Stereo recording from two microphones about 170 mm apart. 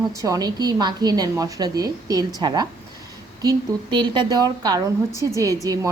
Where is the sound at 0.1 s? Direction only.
20° right (ahead or behind).